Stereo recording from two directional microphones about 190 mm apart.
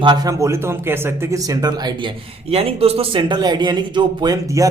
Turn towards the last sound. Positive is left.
turn(degrees=-15)  # may be behind; listen again after turning